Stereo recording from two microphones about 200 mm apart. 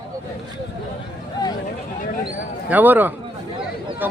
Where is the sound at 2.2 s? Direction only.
10° right (ahead or behind).